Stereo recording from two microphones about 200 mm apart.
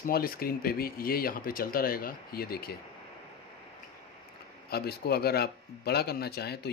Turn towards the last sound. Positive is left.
turn(degrees=55)  # may be behind; listen again after turning